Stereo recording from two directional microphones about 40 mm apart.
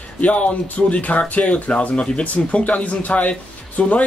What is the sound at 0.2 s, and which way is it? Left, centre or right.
Speech, left.